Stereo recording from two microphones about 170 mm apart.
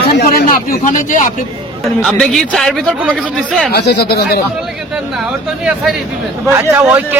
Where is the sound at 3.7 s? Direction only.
70° left (ahead or behind).